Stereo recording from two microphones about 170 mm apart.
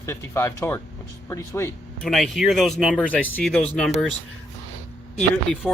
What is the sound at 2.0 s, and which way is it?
Speech, centre (ahead or behind).